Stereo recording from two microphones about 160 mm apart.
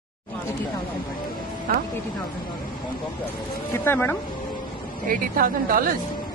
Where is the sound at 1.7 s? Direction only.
65° right (ahead or behind).